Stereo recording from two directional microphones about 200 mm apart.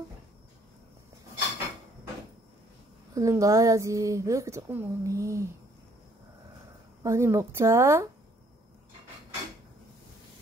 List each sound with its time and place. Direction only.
3.2 s speech: 15° right (ahead or behind)
7.0 s speech: 15° right (ahead or behind)